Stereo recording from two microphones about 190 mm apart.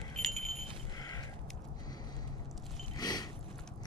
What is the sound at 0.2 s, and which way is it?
Smoke detector, centre (ahead or behind).